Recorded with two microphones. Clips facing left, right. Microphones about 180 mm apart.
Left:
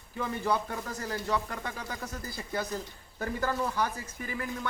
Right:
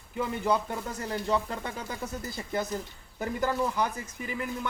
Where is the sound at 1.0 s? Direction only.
30° right (ahead or behind).